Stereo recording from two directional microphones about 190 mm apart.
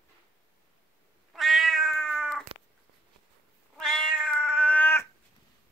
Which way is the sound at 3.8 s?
5° left (ahead or behind).